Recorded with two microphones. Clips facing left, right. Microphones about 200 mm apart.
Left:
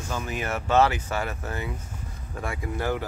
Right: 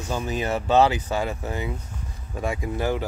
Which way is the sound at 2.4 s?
20° right (ahead or behind).